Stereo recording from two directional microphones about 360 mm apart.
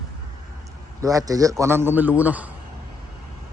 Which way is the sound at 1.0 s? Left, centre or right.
Centre.